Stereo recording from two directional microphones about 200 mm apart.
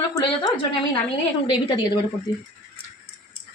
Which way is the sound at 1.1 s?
20° left (ahead or behind).